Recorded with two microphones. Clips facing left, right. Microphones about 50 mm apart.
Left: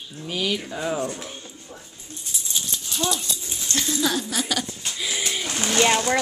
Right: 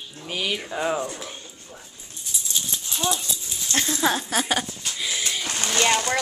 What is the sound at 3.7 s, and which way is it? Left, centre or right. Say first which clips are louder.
Speech: right 1 dB; right.